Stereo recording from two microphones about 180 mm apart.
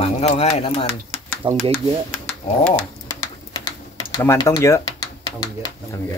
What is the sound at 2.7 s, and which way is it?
Speech, 5° left (ahead or behind).